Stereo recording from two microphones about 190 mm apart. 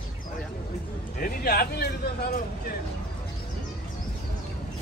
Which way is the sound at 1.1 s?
50° left (ahead or behind).